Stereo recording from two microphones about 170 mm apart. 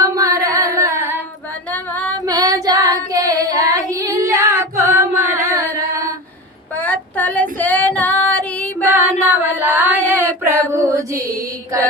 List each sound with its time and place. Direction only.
0.2 s singing: 20° right (ahead or behind)
1.7 s female singing: 10° left (ahead or behind)
2.2 s child singing: 20° right (ahead or behind)
6.7 s female singing: 10° left (ahead or behind)
9.0 s singing: 10° right (ahead or behind)
10.1 s female singing: 10° right (ahead or behind)
10.7 s a sound: 15° right (ahead or behind)